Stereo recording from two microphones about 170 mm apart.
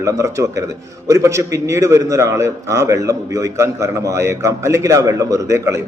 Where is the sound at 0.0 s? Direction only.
20° right (ahead or behind).